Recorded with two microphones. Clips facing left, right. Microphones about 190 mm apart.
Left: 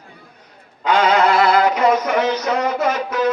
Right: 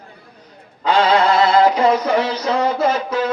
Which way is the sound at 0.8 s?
30° right (ahead or behind).